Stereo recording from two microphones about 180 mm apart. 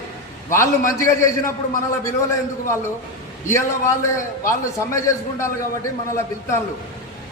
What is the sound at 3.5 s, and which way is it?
A man's voice, 15° left (ahead or behind).